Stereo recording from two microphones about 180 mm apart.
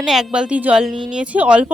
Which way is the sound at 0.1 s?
5° right (ahead or behind).